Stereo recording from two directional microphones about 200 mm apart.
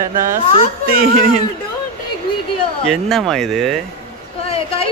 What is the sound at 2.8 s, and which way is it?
Mantra, centre (ahead or behind).